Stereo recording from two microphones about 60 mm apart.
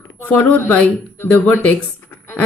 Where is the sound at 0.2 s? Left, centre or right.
Left.